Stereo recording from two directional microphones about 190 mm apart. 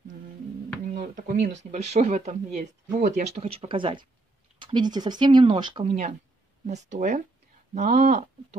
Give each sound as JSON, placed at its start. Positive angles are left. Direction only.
{"t": 0.8, "sound": "a sound", "side_deg": -45}
{"t": 1.6, "sound": "speech", "side_deg": -35}
{"t": 5.9, "sound": "speech", "side_deg": -35}